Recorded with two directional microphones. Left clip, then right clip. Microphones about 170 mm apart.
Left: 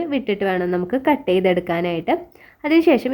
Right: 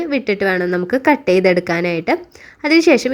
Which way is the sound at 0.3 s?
25° right (ahead or behind).